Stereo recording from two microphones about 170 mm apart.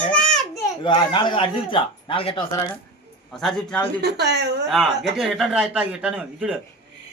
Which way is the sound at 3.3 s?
Centre (ahead or behind).